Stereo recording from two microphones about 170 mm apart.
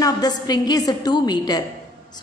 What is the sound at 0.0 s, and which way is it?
A woman's voice, 20° left (ahead or behind).